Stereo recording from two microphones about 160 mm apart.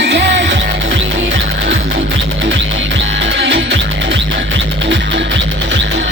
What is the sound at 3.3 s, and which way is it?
Music, 90° right.